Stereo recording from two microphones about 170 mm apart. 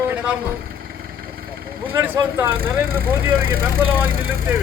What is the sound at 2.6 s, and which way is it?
Speech, 60° right (ahead or behind).